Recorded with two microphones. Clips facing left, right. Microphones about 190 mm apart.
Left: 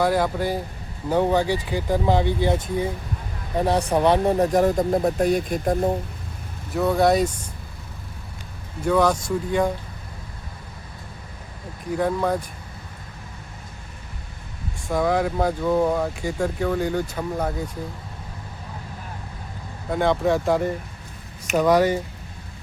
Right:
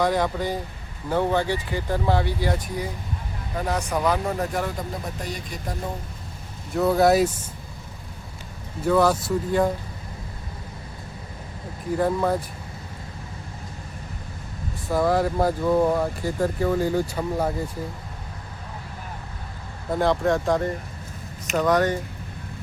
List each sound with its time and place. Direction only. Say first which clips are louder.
0.0 s speech: left 2 dB; 5° left (ahead or behind); by 5.9 s 50° left (ahead or behind)
6.7 s speech: right 1 dB; centre (ahead or behind)
8.8 s speech: even; 5° right (ahead or behind)
11.9 s speech: even; centre (ahead or behind)
14.8 s speech: even; 5° right (ahead or behind)
19.9 s speech: left 1 dB; centre (ahead or behind)